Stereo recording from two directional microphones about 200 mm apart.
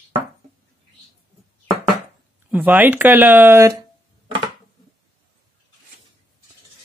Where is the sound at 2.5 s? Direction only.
10° right (ahead or behind).